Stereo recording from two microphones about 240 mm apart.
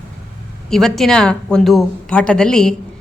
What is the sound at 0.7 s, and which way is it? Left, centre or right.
A woman's voice, centre.